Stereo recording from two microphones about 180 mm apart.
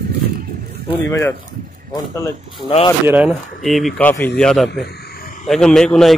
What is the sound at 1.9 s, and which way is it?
Speech, 15° left (ahead or behind).